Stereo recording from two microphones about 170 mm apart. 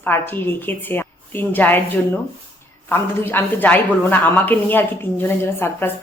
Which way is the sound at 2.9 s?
10° left (ahead or behind).